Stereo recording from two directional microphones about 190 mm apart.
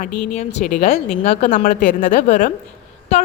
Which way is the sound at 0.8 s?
35° left (ahead or behind).